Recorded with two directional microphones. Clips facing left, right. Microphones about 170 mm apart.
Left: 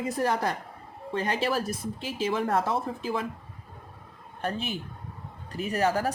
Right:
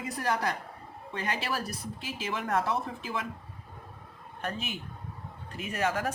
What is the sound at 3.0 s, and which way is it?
Speech, 35° left (ahead or behind).